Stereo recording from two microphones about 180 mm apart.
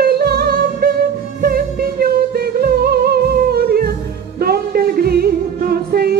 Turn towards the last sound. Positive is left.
turn(degrees=-60)  # may be behind; listen again after turning